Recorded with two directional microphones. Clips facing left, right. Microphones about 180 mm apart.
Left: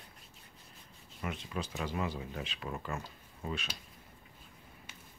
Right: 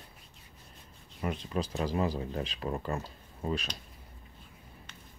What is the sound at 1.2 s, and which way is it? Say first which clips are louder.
Speech: right 6 dB; 35° right (ahead or behind).